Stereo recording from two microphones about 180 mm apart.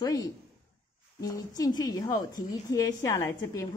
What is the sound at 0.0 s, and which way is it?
A woman's voice, 20° left (ahead or behind).